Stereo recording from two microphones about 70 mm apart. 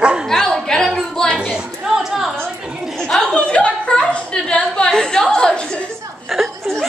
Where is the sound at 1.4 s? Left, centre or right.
Centre.